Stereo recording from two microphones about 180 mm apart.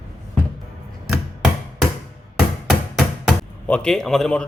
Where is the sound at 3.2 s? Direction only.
5° left (ahead or behind).